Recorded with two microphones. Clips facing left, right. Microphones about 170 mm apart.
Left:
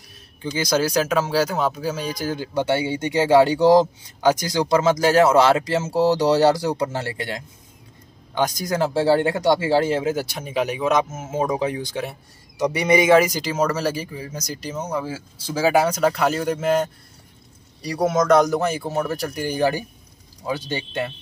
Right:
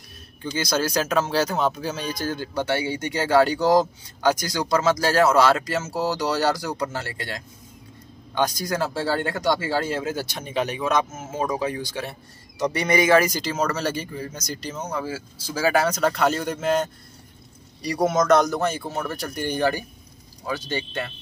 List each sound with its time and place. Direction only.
0.4 s a man's voice: 15° left (ahead or behind)